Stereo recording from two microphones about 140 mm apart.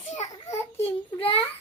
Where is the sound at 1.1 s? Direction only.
40° left (ahead or behind).